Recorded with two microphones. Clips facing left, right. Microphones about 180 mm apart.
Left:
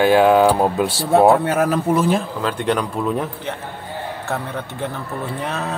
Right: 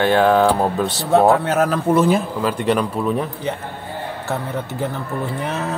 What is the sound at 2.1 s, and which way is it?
Speech, 5° right (ahead or behind).